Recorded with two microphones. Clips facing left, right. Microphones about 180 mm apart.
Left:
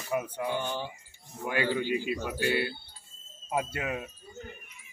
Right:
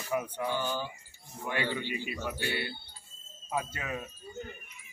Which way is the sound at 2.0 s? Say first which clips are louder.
Left 5 dB; 90° left.